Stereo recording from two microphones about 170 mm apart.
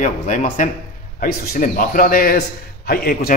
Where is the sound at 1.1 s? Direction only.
55° left (ahead or behind).